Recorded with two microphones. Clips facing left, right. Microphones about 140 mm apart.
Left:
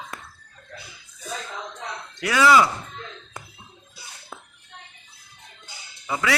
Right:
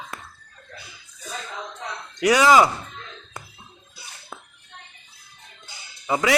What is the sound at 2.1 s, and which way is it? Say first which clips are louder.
Speech: right 2 dB; 20° right (ahead or behind).